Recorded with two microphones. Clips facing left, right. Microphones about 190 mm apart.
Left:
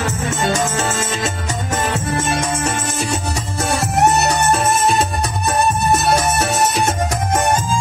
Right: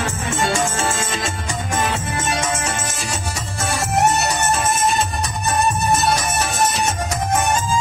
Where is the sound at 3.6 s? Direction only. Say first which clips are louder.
Left 2 dB; 65° left (ahead or behind).